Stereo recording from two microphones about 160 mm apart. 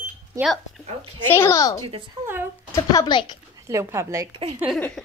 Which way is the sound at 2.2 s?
25° right (ahead or behind).